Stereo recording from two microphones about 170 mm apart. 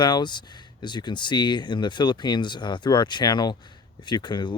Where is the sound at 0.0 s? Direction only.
25° left (ahead or behind).